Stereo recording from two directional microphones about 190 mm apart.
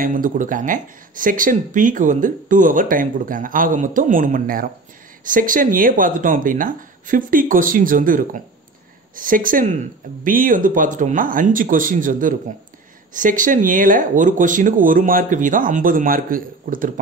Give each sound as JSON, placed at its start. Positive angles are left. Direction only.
{"t": 0.0, "sound": "speech", "side_deg": -45}